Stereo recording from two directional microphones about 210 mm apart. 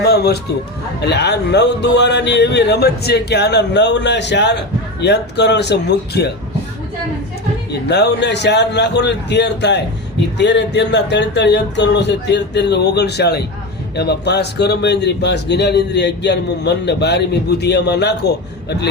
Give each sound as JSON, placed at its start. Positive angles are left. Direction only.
{"t": 0.0, "sound": "a sound", "side_deg": 50}
{"t": 1.0, "sound": "speech", "side_deg": 50}
{"t": 7.7, "sound": "speech", "side_deg": 50}